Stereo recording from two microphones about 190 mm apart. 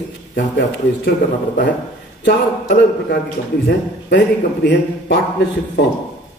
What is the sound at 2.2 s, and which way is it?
Speech, 65° left (ahead or behind).